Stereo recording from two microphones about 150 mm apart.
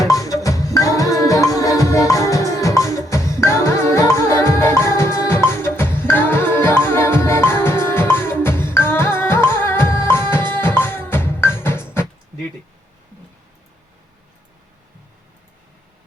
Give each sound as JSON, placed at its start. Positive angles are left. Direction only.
{"t": 0.0, "sound": "music", "side_deg": 25}